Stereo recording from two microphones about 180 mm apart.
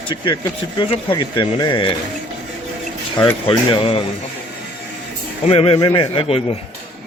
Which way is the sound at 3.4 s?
30° left (ahead or behind).